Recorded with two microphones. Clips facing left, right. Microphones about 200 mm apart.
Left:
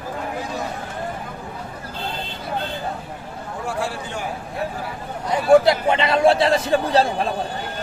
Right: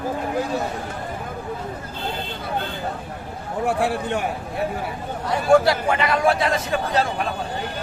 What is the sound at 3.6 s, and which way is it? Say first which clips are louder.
Speech: right 5 dB; 60° right (ahead or behind).